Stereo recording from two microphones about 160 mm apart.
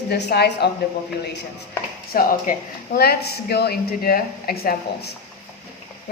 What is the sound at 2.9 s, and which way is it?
A woman's voice, 80° left.